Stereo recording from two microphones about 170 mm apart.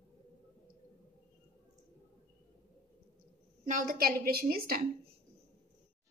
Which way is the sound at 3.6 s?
55° right (ahead or behind).